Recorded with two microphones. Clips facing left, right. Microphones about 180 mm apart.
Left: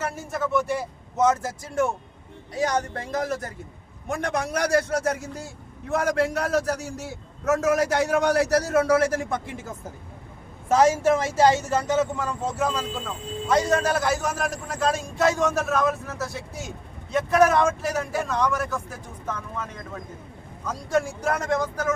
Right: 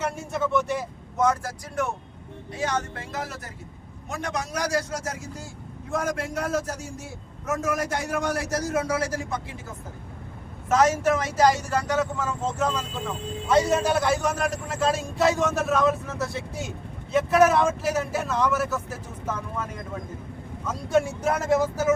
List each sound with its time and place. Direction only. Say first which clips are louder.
0.0 s a man's voice: right 1 dB; centre (ahead or behind)
1.1 s speech: left 2 dB; 20° left (ahead or behind)
2.9 s speech: left 6 dB; 40° left (ahead or behind)
4.1 s a man's voice: left 4 dB; 55° left (ahead or behind)
10.7 s speech: left 2 dB; 30° left (ahead or behind); by 12.8 s 10° left (ahead or behind)
13.5 s a man's voice: right 1 dB; 5° right (ahead or behind)
20.7 s a man's voice: right 2 dB; centre (ahead or behind)